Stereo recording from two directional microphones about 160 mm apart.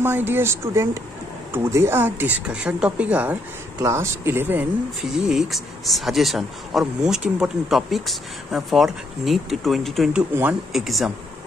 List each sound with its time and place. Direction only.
0.0 s speech: 15° right (ahead or behind)